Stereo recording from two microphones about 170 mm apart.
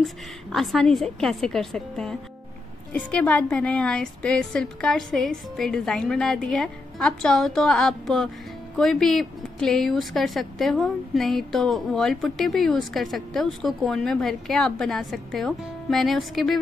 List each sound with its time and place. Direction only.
0.0 s speech: centre (ahead or behind)